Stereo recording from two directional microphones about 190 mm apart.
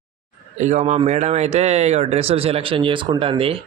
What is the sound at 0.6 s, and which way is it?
Speech, 40° right (ahead or behind).